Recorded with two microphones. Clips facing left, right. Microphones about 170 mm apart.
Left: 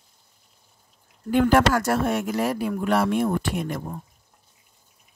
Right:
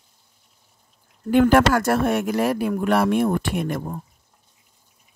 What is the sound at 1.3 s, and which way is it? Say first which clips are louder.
Speech: right 3 dB; 65° right (ahead or behind).